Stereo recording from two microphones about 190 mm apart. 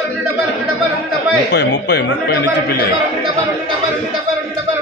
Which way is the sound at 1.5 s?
60° left (ahead or behind).